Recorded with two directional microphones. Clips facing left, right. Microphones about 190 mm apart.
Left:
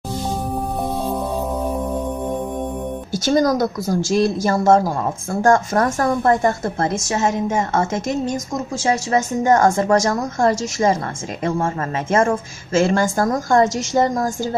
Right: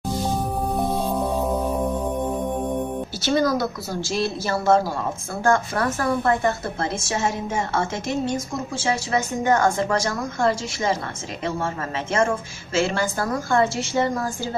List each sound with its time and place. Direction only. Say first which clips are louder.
3.2 s a woman's voice: left 5 dB; 45° left (ahead or behind)